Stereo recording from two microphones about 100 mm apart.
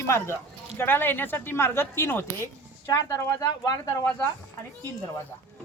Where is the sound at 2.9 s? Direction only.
35° left (ahead or behind).